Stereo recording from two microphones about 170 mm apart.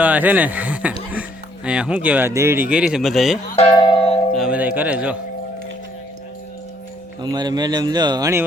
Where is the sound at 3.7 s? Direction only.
30° left (ahead or behind).